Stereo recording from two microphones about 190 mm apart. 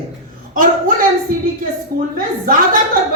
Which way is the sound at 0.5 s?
45° right (ahead or behind).